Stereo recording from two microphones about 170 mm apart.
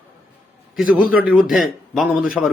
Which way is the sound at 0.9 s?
55° left (ahead or behind).